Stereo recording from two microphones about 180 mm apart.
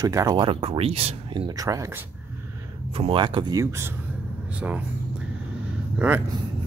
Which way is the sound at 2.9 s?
30° right (ahead or behind).